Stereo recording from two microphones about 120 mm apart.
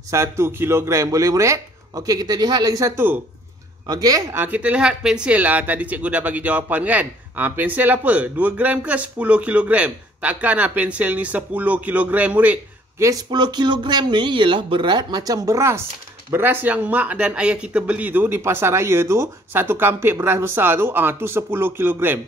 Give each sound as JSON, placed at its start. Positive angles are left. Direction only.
{"t": 0.1, "sound": "speech", "side_deg": -25}
{"t": 3.8, "sound": "speech", "side_deg": -35}
{"t": 4.3, "sound": "speech", "side_deg": -15}
{"t": 13.3, "sound": "speech", "side_deg": -40}